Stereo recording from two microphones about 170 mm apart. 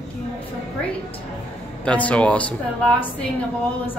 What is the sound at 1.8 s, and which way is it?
Speech, 10° left (ahead or behind).